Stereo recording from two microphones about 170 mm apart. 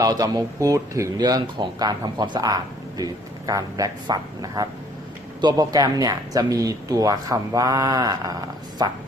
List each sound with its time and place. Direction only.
0.0 s speech: 20° right (ahead or behind)